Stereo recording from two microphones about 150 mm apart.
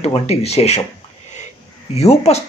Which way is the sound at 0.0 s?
45° left (ahead or behind).